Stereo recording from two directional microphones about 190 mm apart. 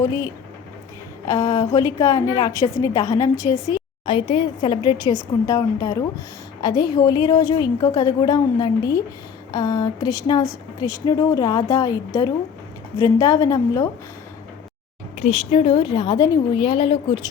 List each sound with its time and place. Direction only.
1.3 s a woman's voice: 20° left (ahead or behind)
15.2 s a woman's voice: 30° left (ahead or behind)